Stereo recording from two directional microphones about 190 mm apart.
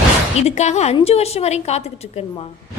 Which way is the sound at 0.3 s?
35° left (ahead or behind).